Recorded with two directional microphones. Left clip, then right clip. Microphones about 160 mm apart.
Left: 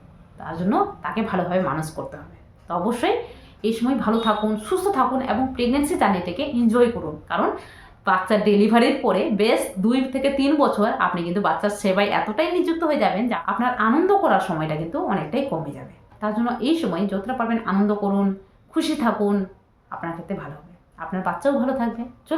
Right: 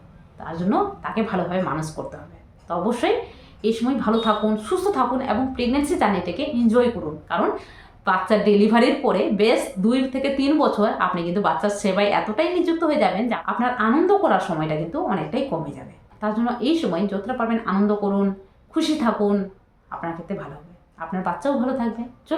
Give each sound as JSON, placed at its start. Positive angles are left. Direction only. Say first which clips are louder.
{"t": 0.3, "sound": "a woman's voice", "louder": "even", "side_deg": 10}